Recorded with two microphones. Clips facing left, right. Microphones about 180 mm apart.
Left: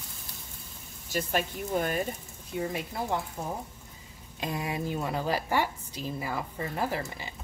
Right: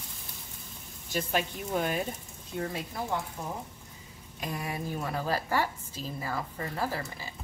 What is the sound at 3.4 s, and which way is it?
Speech, 35° left (ahead or behind).